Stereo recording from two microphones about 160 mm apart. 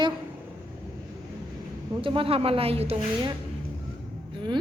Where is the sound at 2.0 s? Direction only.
35° right (ahead or behind).